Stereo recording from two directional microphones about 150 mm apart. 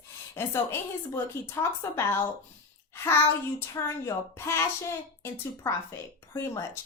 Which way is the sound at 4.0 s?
20° left (ahead or behind).